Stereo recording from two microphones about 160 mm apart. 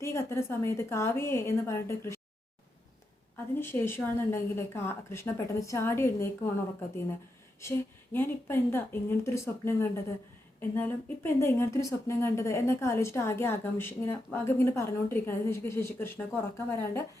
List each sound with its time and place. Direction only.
0.0 s speech: 15° left (ahead or behind)
3.5 s speech: 15° left (ahead or behind)
7.6 s speech: 15° left (ahead or behind)